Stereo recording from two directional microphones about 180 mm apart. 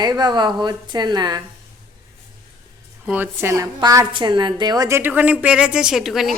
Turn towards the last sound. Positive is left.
turn(degrees=0)  # may be behind; listen again after turning